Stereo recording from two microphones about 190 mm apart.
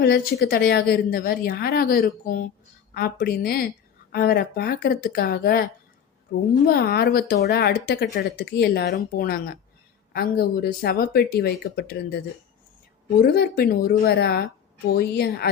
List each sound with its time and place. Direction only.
0.0 s speech: 55° left (ahead or behind)
6.3 s speech: 60° left (ahead or behind)
13.2 s speech: 55° left (ahead or behind)